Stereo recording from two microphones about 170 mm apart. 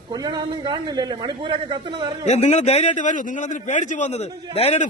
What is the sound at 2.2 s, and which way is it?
A man's voice, 40° left (ahead or behind).